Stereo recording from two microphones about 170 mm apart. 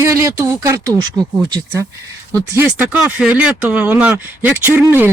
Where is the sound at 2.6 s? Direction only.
5° right (ahead or behind).